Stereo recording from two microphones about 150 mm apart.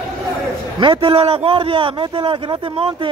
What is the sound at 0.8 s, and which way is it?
A man's voice, 35° right (ahead or behind).